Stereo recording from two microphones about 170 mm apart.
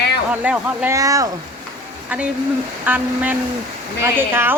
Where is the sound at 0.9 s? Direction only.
20° right (ahead or behind).